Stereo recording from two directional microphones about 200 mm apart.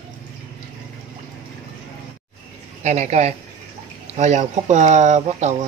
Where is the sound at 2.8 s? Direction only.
35° right (ahead or behind).